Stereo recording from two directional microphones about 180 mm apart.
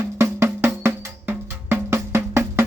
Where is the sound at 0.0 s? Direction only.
15° right (ahead or behind).